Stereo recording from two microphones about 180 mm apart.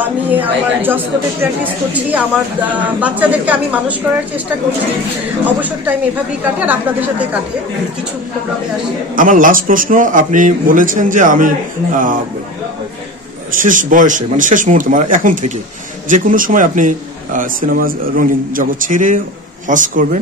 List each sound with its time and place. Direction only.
0.0 s speech: 10° right (ahead or behind)
6.4 s speech: 10° right (ahead or behind)
9.1 s speech: 50° right (ahead or behind)
13.6 s speech: 45° right (ahead or behind)